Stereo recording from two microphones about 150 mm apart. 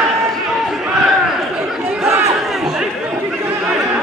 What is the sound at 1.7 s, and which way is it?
Chatter, centre (ahead or behind).